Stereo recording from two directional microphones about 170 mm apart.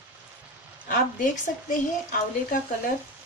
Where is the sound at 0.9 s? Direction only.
50° left (ahead or behind).